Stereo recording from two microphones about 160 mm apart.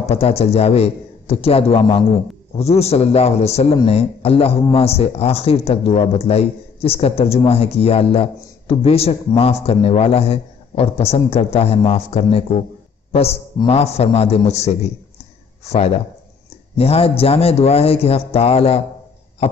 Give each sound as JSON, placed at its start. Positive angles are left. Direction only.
{"t": 0.0, "sound": "a man's voice", "side_deg": 40}